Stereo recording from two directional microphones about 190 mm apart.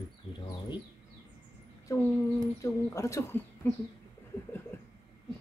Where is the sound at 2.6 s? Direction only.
15° left (ahead or behind).